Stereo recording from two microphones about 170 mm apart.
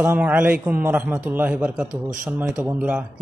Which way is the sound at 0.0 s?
10° right (ahead or behind).